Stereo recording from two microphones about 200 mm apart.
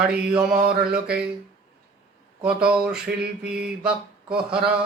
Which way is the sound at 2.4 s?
5° right (ahead or behind).